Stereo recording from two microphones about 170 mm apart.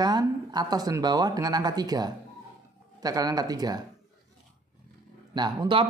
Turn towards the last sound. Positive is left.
turn(degrees=-25)  # may be behind; listen again after turning